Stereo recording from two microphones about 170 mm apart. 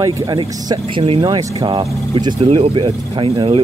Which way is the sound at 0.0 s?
25° right (ahead or behind).